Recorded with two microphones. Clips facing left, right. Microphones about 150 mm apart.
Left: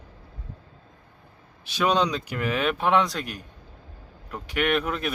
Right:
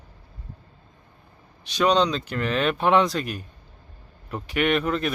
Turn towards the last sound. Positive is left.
turn(degrees=5)  # may be behind; listen again after turning